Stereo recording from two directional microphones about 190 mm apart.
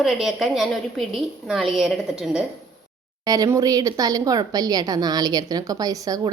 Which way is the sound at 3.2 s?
20° right (ahead or behind).